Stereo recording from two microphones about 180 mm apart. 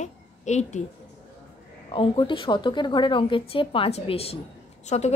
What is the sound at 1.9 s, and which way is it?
A woman's voice, 30° left (ahead or behind).